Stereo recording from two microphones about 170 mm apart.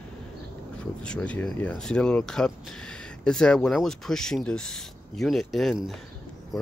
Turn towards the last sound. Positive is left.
turn(degrees=0)  # may be behind; listen again after turning